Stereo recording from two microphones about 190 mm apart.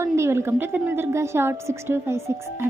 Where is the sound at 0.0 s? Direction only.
15° right (ahead or behind).